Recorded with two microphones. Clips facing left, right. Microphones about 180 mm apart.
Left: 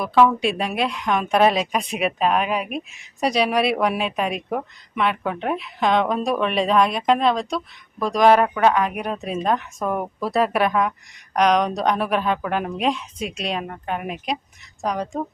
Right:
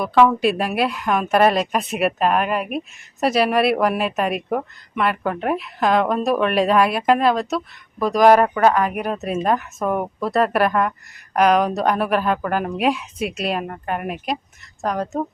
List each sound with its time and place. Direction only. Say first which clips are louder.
0.0 s a woman's voice: right 2 dB; centre (ahead or behind)